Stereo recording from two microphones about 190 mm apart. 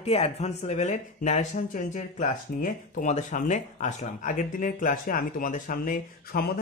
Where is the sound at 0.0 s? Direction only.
35° left (ahead or behind).